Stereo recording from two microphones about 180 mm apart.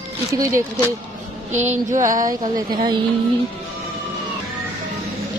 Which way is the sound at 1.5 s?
40° right (ahead or behind).